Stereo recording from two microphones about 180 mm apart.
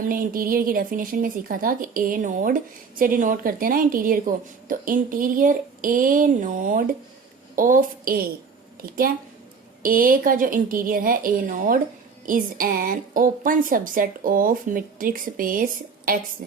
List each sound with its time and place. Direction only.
0.1 s a woman's voice: 50° right (ahead or behind)